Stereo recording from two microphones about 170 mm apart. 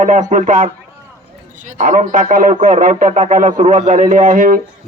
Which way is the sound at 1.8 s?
50° right (ahead or behind).